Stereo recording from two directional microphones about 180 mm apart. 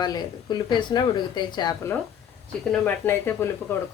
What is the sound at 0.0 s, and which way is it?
A woman's voice, 25° left (ahead or behind).